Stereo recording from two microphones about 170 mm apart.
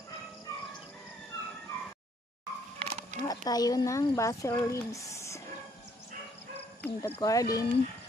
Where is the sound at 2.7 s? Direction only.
35° right (ahead or behind).